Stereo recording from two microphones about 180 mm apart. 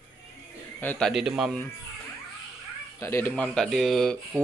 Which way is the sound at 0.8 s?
5° left (ahead or behind).